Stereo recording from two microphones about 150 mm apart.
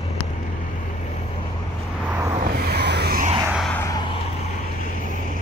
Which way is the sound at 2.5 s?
90° right.